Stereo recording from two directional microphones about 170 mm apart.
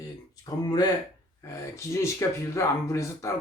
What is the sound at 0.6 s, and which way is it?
Speech, 25° left (ahead or behind).